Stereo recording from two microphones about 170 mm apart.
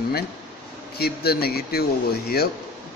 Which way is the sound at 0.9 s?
65° left (ahead or behind).